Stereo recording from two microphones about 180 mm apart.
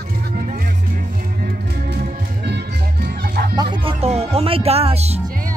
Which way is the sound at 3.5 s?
25° right (ahead or behind).